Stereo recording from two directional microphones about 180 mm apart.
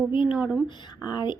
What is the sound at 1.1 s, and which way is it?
Speech, 25° left (ahead or behind).